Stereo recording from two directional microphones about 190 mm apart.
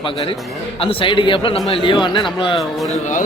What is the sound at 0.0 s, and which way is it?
A man's voice, 25° left (ahead or behind).